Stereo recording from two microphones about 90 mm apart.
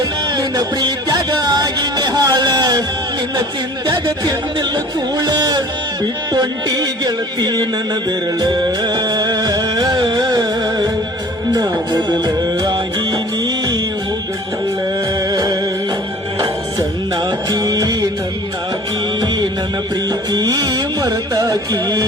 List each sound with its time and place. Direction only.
0.0 s music: 50° right (ahead or behind)
3.8 s speech: 50° right (ahead or behind)
8.4 s music: 55° right (ahead or behind)
11.5 s speech: 45° right (ahead or behind)
12.7 s music: 50° right (ahead or behind)
15.3 s music: 45° right (ahead or behind)
19.2 s music: 55° right (ahead or behind)
20.1 s speech: 50° right (ahead or behind)